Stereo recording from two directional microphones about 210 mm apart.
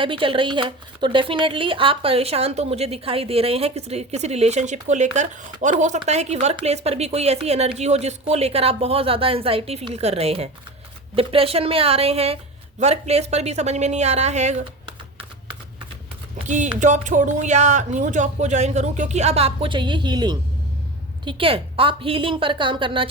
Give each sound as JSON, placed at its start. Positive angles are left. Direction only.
{"t": 0.0, "sound": "speech", "side_deg": -25}
{"t": 16.8, "sound": "speech", "side_deg": -35}